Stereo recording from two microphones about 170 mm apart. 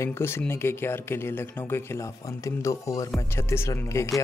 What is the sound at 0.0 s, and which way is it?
Speech, 15° left (ahead or behind).